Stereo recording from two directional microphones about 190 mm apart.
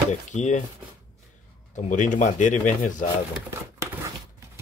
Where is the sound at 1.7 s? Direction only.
40° left (ahead or behind).